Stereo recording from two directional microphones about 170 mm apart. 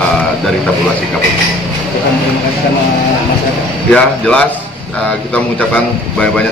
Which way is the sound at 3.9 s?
5° left (ahead or behind).